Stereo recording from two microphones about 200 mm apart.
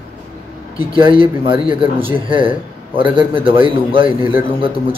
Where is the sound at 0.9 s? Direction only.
25° right (ahead or behind).